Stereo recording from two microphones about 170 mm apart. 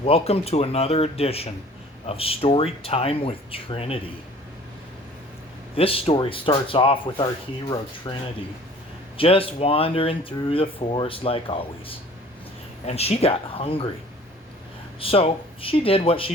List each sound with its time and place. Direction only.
0.0 s speech: 35° left (ahead or behind)
5.7 s speech: 35° left (ahead or behind)
15.0 s speech: 35° left (ahead or behind)